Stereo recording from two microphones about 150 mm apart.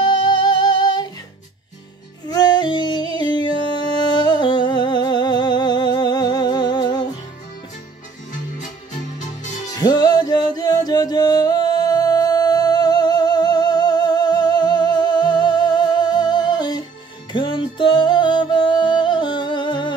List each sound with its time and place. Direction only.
0.0 s music: 30° left (ahead or behind)
2.2 s music: 30° left (ahead or behind)
9.7 s music: 25° left (ahead or behind)